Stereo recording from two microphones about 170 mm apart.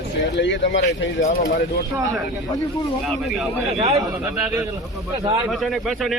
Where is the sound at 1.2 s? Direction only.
45° left (ahead or behind).